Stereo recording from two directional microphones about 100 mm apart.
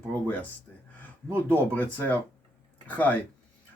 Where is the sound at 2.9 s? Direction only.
15° left (ahead or behind).